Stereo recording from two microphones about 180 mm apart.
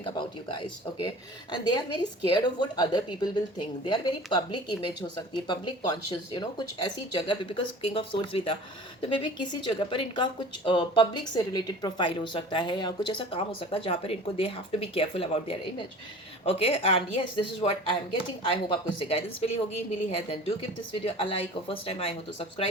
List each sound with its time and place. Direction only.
0.0 s a woman's voice: 25° left (ahead or behind)